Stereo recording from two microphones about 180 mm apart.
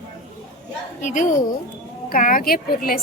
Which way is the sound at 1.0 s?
45° left (ahead or behind).